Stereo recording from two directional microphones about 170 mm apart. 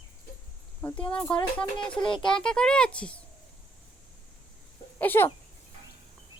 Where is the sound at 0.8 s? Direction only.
5° left (ahead or behind).